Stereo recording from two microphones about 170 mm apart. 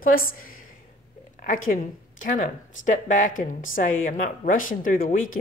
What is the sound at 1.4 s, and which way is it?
Speech, 50° left (ahead or behind).